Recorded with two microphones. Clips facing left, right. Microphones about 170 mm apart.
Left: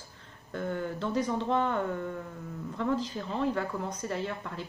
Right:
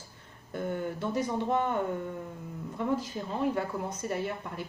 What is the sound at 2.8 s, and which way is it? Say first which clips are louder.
A woman's voice: even; 15° right (ahead or behind).